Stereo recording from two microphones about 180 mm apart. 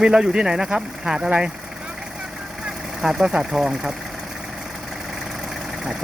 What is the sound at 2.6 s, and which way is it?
Speech, 5° right (ahead or behind).